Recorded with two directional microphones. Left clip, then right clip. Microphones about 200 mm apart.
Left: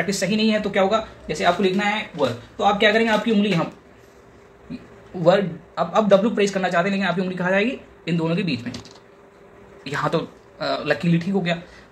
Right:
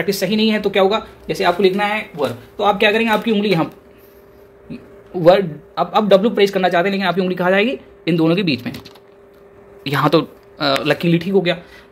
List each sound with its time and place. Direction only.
0.0 s speech: 60° right (ahead or behind)
2.5 s speech: 70° right (ahead or behind)
5.2 s a man's voice: 40° right (ahead or behind); by 8.7 s 55° right (ahead or behind)
9.8 s speech: 55° right (ahead or behind)